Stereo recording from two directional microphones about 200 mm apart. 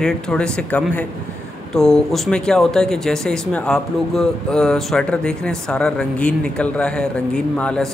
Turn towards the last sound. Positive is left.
turn(degrees=5)  # may be behind; listen again after turning